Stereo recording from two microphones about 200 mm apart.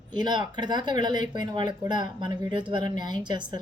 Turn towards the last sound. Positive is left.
turn(degrees=-20)  # may be behind; listen again after turning